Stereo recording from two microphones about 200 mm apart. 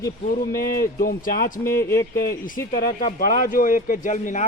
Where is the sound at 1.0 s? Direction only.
45° left (ahead or behind).